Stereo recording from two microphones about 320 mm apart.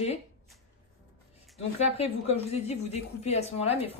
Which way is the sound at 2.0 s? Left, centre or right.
Centre.